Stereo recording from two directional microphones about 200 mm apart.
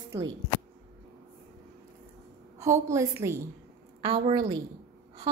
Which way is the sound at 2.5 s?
15° right (ahead or behind).